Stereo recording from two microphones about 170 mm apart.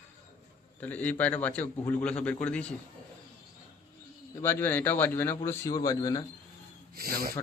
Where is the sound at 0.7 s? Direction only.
10° left (ahead or behind).